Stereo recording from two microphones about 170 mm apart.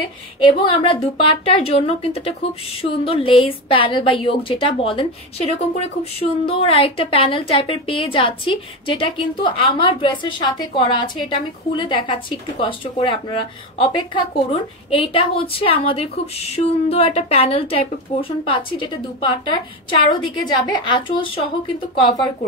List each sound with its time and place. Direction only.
0.4 s a woman's voice: 30° left (ahead or behind)